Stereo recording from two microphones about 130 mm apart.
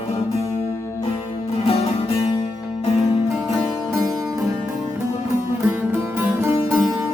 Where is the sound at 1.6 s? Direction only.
50° left (ahead or behind).